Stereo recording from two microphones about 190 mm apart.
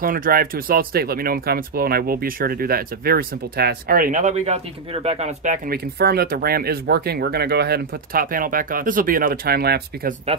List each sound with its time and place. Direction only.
0.0 s speech: 50° right (ahead or behind)
5.9 s speech: 55° right (ahead or behind)